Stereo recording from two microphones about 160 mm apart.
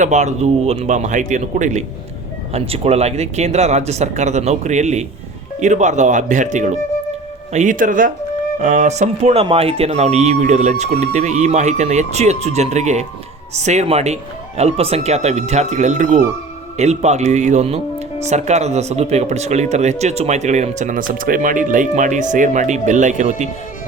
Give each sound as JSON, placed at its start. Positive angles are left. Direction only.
{"t": 0.0, "sound": "speech", "side_deg": -45}
{"t": 2.5, "sound": "speech", "side_deg": -40}